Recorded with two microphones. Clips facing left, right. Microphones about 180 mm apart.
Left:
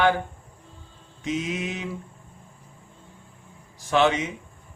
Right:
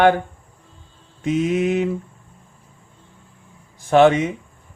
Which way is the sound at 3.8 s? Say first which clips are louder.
Right 8 dB; 55° right (ahead or behind).